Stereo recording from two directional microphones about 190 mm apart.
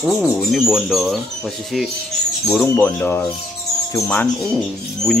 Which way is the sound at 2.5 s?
5° left (ahead or behind).